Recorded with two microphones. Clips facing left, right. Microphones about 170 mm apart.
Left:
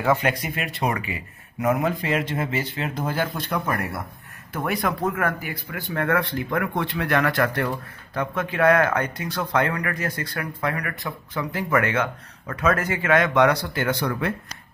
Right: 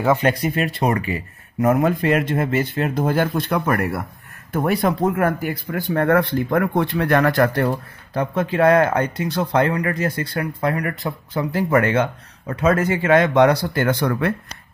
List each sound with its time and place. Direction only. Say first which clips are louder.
0.2 s speech: right 6 dB; 35° right (ahead or behind); by 4.0 s 65° right (ahead or behind)
4.5 s speech: right 6 dB; 40° right (ahead or behind)
13.7 s speech: right 5 dB; 50° right (ahead or behind)